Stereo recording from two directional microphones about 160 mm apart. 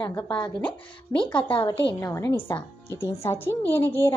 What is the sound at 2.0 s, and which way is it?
A woman's voice, 15° left (ahead or behind).